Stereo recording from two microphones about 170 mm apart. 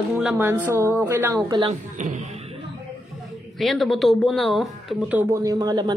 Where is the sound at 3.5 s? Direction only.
Centre (ahead or behind).